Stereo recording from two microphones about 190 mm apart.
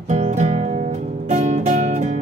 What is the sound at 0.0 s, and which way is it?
Music, 40° right (ahead or behind).